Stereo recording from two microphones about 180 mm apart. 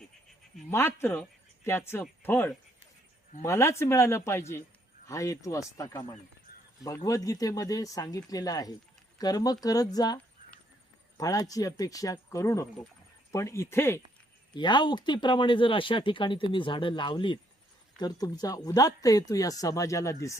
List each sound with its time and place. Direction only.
0.7 s speech: 10° left (ahead or behind)
11.2 s speech: 20° left (ahead or behind)
14.5 s speech: 25° left (ahead or behind)